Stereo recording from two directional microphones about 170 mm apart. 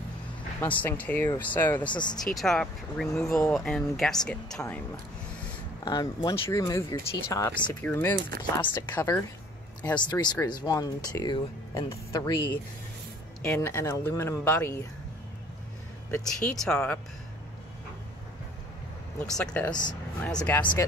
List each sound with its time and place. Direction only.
0.6 s speech: 10° left (ahead or behind)
1.9 s speech: 25° left (ahead or behind)
2.3 s speech: 5° left (ahead or behind)
5.9 s speech: 25° left (ahead or behind)
6.5 s speech: 15° left (ahead or behind)
16.1 s speech: 5° left (ahead or behind)
19.2 s speech: 5° left (ahead or behind)